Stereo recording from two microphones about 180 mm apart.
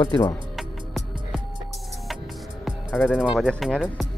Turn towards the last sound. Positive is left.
turn(degrees=5)  # may be behind; listen again after turning